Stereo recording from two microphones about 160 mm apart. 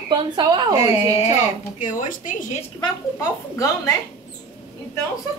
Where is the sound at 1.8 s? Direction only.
55° left (ahead or behind).